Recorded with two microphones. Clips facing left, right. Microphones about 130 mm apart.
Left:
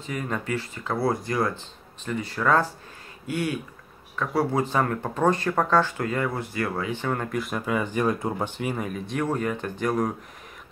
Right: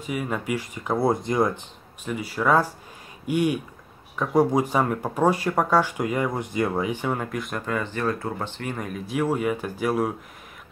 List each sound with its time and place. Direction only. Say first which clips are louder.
0.0 s speech: right 2 dB; 10° right (ahead or behind)